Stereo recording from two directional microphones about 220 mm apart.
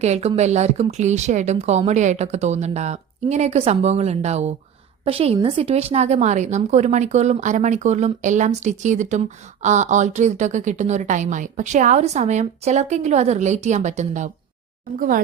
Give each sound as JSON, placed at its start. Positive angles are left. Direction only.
{"t": 0.0, "sound": "a woman's voice", "side_deg": -30}